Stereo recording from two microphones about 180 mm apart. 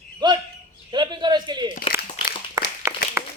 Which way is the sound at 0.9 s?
25° right (ahead or behind).